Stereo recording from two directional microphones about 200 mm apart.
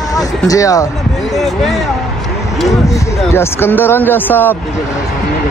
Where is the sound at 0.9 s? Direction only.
Centre (ahead or behind).